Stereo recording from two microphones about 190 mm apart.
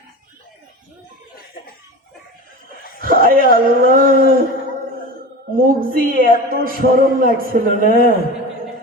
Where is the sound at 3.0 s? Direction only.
50° right (ahead or behind).